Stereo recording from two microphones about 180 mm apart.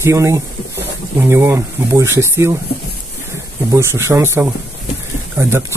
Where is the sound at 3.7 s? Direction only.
15° right (ahead or behind).